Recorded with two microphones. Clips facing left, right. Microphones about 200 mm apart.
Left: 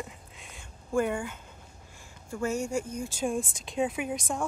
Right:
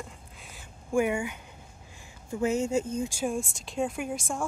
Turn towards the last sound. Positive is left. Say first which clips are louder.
# left 1 dB
turn(degrees=5)  # may be behind; listen again after turning